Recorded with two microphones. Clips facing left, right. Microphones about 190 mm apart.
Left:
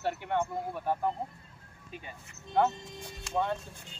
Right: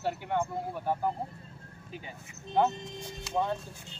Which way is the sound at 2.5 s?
20° right (ahead or behind).